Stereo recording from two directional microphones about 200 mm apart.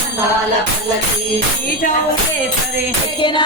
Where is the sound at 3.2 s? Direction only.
25° left (ahead or behind).